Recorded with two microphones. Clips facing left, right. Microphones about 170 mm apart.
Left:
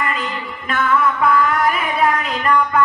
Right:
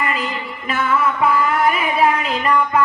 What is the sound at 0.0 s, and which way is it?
Music, 5° right (ahead or behind).